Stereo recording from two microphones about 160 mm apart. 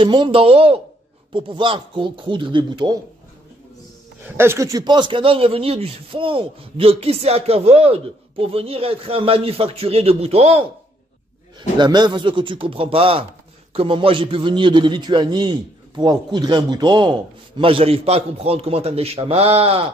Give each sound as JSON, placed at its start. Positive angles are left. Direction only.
{"t": 0.0, "sound": "a man's voice", "side_deg": -30}
{"t": 4.4, "sound": "a man's voice", "side_deg": -15}
{"t": 11.8, "sound": "a man's voice", "side_deg": -30}